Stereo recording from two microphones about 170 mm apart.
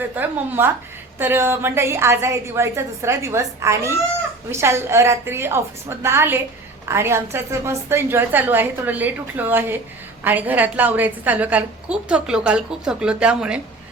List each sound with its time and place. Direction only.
0.2 s a woman's voice: 15° right (ahead or behind)